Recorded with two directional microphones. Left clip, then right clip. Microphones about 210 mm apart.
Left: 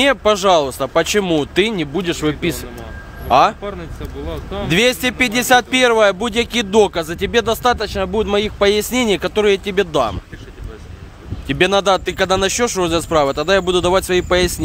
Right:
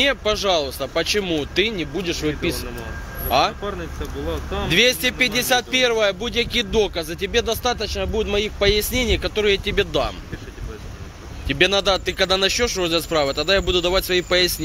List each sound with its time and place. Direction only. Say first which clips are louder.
0.0 s speech: left 6 dB; 40° left (ahead or behind)
4.6 s speech: left 2 dB; 40° left (ahead or behind)
11.4 s speech: left 3 dB; 40° left (ahead or behind)